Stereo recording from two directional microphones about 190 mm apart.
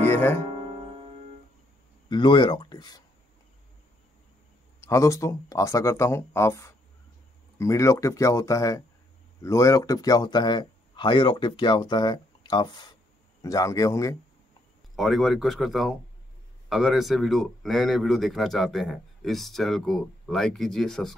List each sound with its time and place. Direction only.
0.0 s music: 10° left (ahead or behind)
0.5 s music: 30° right (ahead or behind)
2.0 s speech: 25° left (ahead or behind)
4.7 s speech: 15° left (ahead or behind)
15.0 s speech: centre (ahead or behind)